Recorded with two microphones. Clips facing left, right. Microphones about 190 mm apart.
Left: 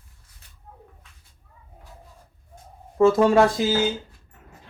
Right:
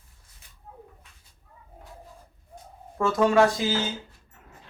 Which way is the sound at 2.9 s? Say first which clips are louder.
Left 4 dB; 30° left (ahead or behind).